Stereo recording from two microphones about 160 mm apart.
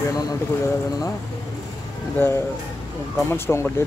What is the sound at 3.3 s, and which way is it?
Speech, 15° left (ahead or behind).